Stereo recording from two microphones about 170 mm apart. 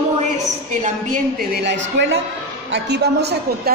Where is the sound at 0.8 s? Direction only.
55° right (ahead or behind); by 2.0 s 90° right.